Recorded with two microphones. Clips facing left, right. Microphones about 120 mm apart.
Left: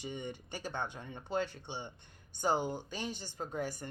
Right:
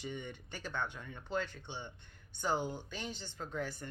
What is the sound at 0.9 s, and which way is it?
Speech, 25° left (ahead or behind).